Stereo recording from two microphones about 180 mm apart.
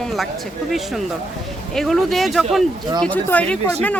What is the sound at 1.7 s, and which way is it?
Speech, centre (ahead or behind).